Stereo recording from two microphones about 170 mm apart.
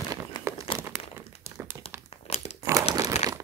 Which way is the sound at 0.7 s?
30° left (ahead or behind).